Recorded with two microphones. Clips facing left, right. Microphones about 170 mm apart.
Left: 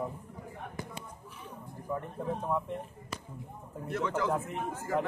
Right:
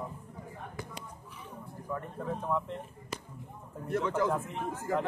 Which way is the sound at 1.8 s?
15° left (ahead or behind).